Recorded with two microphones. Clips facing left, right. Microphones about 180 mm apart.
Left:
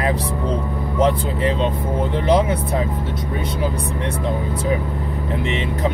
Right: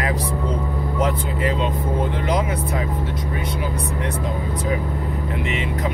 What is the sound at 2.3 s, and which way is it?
Speech, 25° left (ahead or behind).